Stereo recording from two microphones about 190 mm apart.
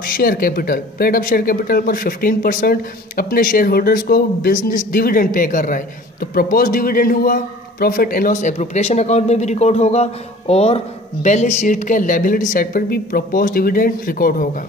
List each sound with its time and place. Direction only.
0.0 s a man's voice: 50° left (ahead or behind)